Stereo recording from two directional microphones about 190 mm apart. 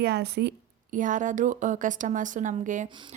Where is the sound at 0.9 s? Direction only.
40° right (ahead or behind).